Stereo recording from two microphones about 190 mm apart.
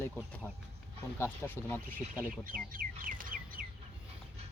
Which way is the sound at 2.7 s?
45° right (ahead or behind).